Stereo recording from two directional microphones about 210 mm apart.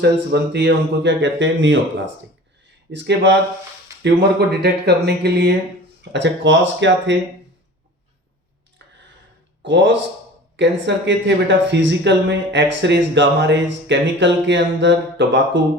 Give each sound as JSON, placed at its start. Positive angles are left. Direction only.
{"t": 0.0, "sound": "speech", "side_deg": -50}
{"t": 2.9, "sound": "speech", "side_deg": -55}
{"t": 8.8, "sound": "a sound", "side_deg": -55}
{"t": 9.6, "sound": "speech", "side_deg": -60}